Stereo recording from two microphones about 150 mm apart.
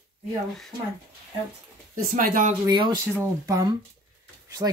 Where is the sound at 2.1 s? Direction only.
65° right (ahead or behind).